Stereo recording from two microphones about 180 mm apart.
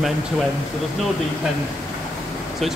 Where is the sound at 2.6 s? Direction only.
Centre (ahead or behind).